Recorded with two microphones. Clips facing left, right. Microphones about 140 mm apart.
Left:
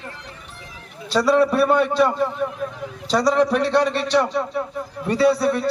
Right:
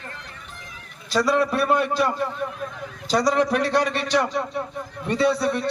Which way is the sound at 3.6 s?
30° left (ahead or behind).